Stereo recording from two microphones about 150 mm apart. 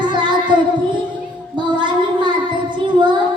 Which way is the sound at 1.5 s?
30° right (ahead or behind).